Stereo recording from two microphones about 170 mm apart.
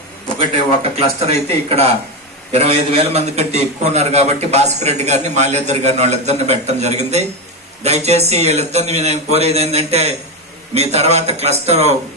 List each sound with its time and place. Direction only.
0.9 s a man's voice: 35° right (ahead or behind)